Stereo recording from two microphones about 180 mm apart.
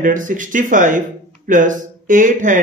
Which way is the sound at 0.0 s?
45° right (ahead or behind).